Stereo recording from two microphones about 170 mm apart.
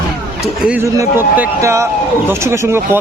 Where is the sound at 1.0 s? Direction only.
15° right (ahead or behind).